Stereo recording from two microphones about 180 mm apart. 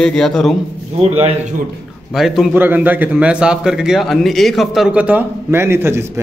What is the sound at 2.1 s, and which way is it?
A man's voice, centre (ahead or behind).